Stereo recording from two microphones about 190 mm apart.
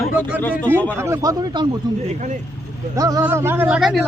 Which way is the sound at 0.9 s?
15° right (ahead or behind).